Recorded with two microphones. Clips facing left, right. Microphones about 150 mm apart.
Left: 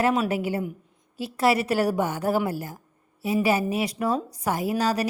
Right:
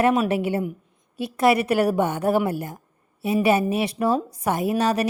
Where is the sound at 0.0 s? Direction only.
25° right (ahead or behind).